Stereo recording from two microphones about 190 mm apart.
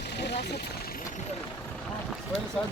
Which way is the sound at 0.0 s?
60° left (ahead or behind).